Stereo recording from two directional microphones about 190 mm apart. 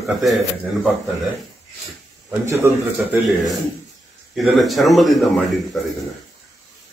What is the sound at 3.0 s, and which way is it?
A man's voice, centre (ahead or behind).